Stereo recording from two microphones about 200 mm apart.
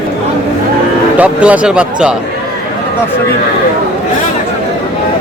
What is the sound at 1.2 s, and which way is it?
Speech, 5° right (ahead or behind).